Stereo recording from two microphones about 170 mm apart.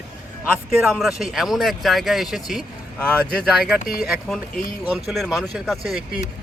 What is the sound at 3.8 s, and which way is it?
Speech, 60° left (ahead or behind).